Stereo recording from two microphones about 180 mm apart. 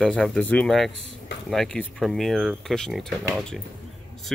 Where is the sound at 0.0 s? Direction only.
5° left (ahead or behind).